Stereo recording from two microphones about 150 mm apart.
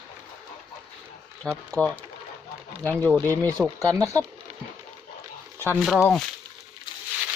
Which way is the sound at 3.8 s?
20° right (ahead or behind).